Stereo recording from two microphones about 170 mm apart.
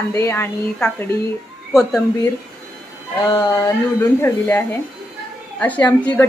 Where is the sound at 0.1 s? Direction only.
15° left (ahead or behind).